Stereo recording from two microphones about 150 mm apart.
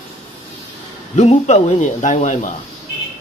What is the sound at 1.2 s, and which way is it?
Speech, 50° left (ahead or behind).